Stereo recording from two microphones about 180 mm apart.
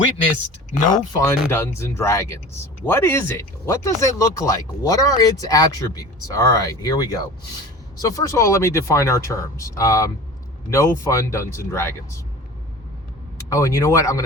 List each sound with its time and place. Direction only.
1.2 s speech: 15° left (ahead or behind)
13.5 s speech: 15° left (ahead or behind)